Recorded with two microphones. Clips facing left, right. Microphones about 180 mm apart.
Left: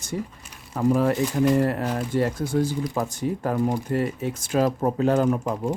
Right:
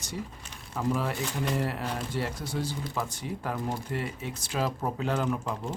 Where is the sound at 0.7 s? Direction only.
50° left (ahead or behind).